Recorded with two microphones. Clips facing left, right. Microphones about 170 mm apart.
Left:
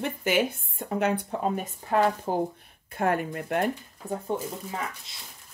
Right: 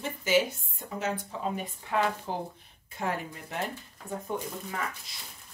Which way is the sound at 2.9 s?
55° left (ahead or behind).